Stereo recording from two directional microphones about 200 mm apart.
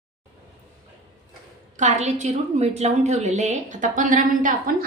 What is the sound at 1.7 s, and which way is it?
A woman's voice, 35° right (ahead or behind).